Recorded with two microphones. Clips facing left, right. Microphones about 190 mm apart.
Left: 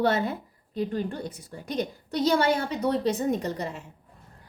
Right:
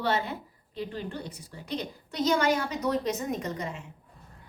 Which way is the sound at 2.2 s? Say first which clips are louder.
Left 2 dB; 35° left (ahead or behind).